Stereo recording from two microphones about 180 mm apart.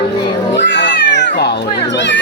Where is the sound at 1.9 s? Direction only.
80° left.